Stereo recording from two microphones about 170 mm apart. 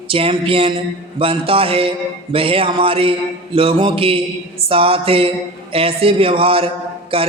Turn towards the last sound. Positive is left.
turn(degrees=-35)  # may be behind; listen again after turning